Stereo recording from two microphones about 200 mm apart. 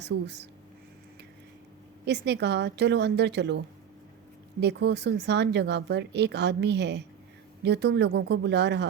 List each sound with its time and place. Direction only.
0.0 s speech: 60° right (ahead or behind)
2.0 s speech: 55° right (ahead or behind)
4.6 s speech: 60° right (ahead or behind)